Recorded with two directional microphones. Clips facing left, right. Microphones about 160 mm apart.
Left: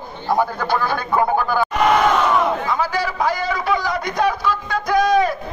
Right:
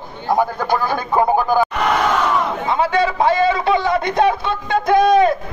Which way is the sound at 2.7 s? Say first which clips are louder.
Right 4 dB; 25° right (ahead or behind).